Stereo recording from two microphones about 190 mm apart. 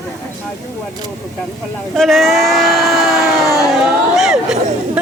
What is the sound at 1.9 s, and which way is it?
Speech, centre (ahead or behind).